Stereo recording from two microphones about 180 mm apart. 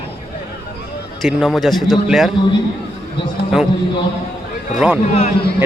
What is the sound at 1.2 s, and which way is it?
A man's voice, centre (ahead or behind).